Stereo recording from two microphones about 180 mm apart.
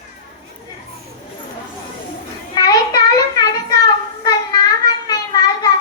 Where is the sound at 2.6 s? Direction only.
20° left (ahead or behind).